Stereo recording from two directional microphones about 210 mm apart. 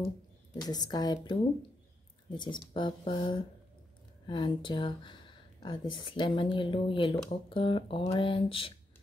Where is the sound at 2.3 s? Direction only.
20° left (ahead or behind).